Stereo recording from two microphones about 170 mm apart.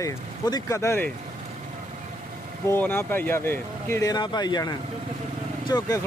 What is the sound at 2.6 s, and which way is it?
Speech, 10° left (ahead or behind).